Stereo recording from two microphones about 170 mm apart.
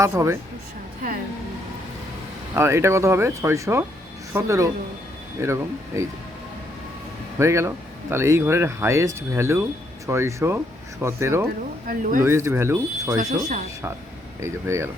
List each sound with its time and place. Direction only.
0.0 s speech: 15° right (ahead or behind)
2.6 s speech: 15° right (ahead or behind)
7.3 s speech: 15° right (ahead or behind)
11.9 s speech: 50° right (ahead or behind)
12.2 s speech: 15° right (ahead or behind)
14.4 s speech: 15° right (ahead or behind)